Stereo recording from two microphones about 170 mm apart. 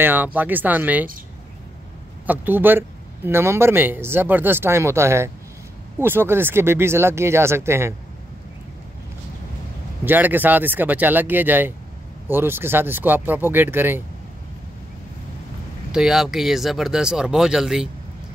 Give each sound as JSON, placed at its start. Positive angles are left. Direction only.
{"t": 0.0, "sound": "speech", "side_deg": -10}
{"t": 2.2, "sound": "speech", "side_deg": -10}
{"t": 10.0, "sound": "speech", "side_deg": -10}
{"t": 15.9, "sound": "speech", "side_deg": -5}